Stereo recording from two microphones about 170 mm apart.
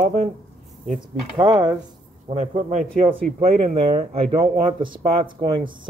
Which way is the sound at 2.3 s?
40° right (ahead or behind).